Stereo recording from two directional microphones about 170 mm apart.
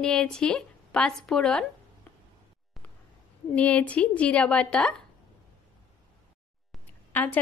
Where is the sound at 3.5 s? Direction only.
10° left (ahead or behind).